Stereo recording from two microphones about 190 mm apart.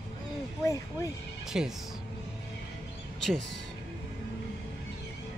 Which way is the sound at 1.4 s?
Centre (ahead or behind).